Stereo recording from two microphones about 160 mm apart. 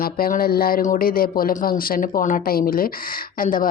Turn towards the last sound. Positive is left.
turn(degrees=60)  # may be behind; listen again after turning